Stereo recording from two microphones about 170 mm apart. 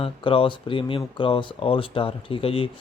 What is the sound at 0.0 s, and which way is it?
Speech, 30° left (ahead or behind).